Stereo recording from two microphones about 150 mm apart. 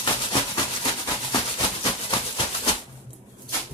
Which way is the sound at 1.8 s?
35° left (ahead or behind).